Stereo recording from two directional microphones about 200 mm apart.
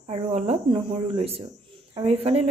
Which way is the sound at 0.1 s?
30° right (ahead or behind).